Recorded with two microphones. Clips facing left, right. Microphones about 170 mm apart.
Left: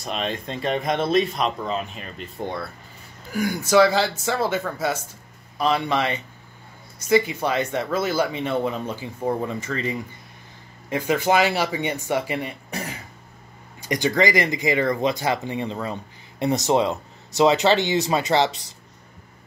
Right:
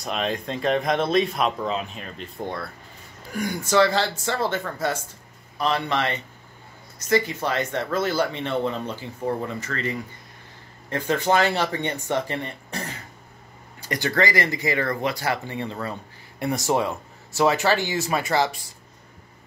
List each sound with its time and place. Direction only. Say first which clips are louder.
0.0 s speech: right 1 dB; centre (ahead or behind); by 18.7 s 20° left (ahead or behind)